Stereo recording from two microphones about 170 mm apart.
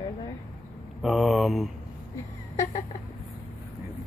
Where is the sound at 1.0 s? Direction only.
Centre (ahead or behind).